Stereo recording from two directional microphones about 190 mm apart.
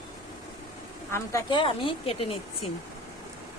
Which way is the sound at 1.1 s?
15° left (ahead or behind).